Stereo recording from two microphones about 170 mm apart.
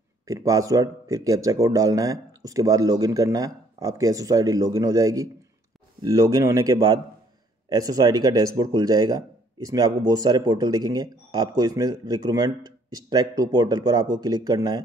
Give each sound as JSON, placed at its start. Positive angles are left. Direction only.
{"t": 0.3, "sound": "speech", "side_deg": -20}